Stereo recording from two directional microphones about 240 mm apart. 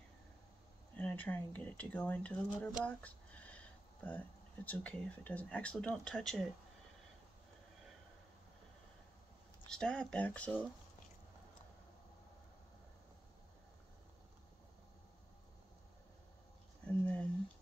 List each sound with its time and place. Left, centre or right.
0.9 s speech: centre
4.6 s speech: centre
9.7 s speech: centre
16.8 s a sound: centre